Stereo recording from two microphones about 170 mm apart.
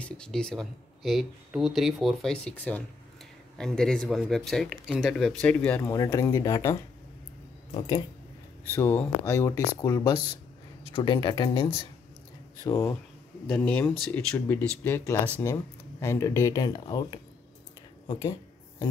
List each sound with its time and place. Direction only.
0.0 s speech: 5° left (ahead or behind)
8.7 s speech: 10° left (ahead or behind); by 11.8 s 30° left (ahead or behind)
12.6 s speech: 15° left (ahead or behind)